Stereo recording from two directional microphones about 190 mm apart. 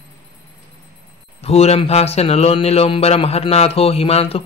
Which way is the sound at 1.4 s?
30° left (ahead or behind).